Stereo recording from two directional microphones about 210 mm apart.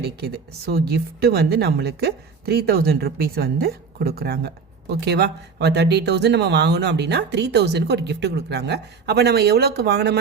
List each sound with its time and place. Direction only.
0.0 s speech: 50° right (ahead or behind)